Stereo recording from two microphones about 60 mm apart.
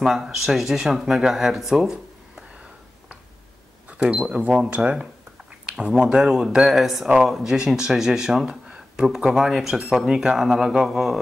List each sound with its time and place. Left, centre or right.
0.0 s speech: centre
4.0 s speech: right
6.0 s speech: centre